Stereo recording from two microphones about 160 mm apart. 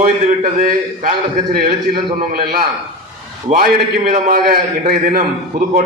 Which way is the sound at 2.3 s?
70° right (ahead or behind).